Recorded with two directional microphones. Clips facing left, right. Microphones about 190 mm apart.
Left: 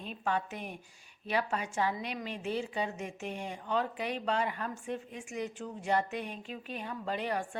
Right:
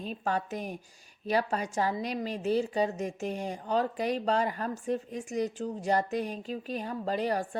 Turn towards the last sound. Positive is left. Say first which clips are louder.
# right 5 dB
turn(degrees=-40)  # may be behind; listen again after turning